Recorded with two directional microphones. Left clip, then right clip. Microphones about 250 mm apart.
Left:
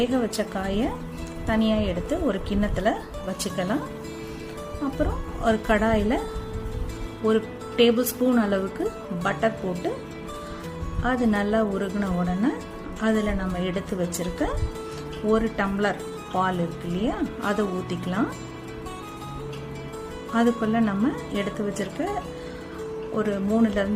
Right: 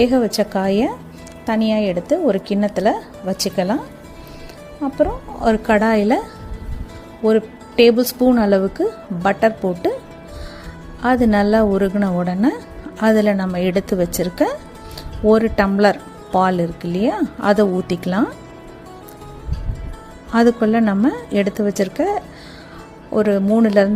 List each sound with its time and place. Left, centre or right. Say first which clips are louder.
0.0 s speech: right 9 dB; right
4.9 s speech: right 13 dB; right
7.3 s speech: right 7 dB; right
11.0 s speech: right 9 dB; right
20.3 s speech: right 8 dB; right
23.1 s speech: right 10 dB; right